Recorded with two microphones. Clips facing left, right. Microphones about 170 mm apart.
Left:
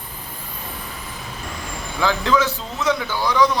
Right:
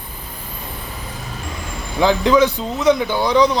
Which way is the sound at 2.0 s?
20° right (ahead or behind).